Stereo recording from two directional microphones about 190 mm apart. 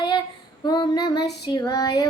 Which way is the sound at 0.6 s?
25° left (ahead or behind).